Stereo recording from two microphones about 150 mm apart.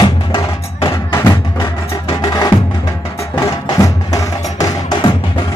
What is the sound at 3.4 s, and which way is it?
Music, 25° left (ahead or behind).